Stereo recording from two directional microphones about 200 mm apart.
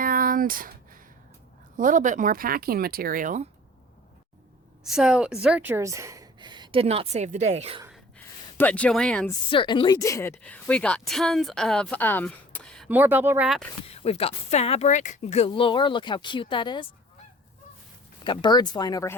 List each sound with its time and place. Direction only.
0.0 s a sound: 45° right (ahead or behind)
1.7 s speech: 40° right (ahead or behind)
4.8 s speech: 5° right (ahead or behind); by 7.8 s 35° right (ahead or behind)
8.5 s a woman's voice: 5° left (ahead or behind)
9.5 s a woman's voice: 25° left (ahead or behind); by 12.9 s 5° left (ahead or behind)
12.9 s speech: 10° right (ahead or behind)
13.8 s speech: 30° left (ahead or behind)
18.2 s speech: 20° left (ahead or behind)